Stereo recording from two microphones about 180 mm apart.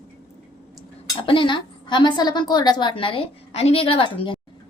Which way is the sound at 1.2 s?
30° left (ahead or behind).